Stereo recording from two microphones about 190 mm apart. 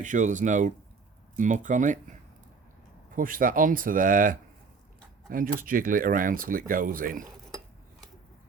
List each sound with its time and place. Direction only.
0.0 s speech: 40° right (ahead or behind)
3.2 s speech: 45° right (ahead or behind)
5.5 s speech: 45° right (ahead or behind)